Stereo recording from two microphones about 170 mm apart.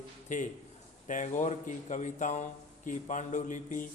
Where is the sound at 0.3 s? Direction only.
45° left (ahead or behind).